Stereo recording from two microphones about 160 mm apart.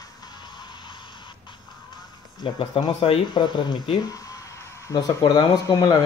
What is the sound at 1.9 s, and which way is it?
Speech, 30° left (ahead or behind).